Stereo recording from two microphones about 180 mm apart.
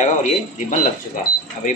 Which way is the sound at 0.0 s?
45° left (ahead or behind).